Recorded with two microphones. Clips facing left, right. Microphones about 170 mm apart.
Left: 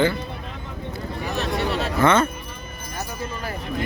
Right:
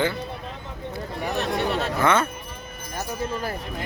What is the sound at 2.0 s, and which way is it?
Speech, 10° right (ahead or behind).